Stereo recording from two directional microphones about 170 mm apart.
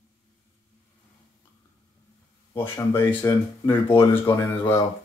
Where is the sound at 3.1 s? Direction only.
20° left (ahead or behind).